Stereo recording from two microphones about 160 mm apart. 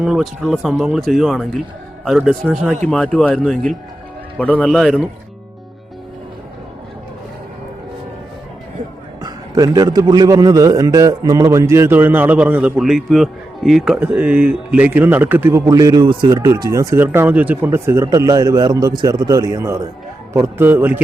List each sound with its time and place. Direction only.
0.0 s a man's voice: centre (ahead or behind)
9.2 s a man's voice: 25° right (ahead or behind)